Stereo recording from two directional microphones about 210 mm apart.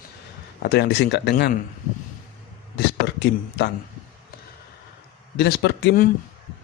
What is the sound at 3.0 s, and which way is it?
Speech, 55° left (ahead or behind).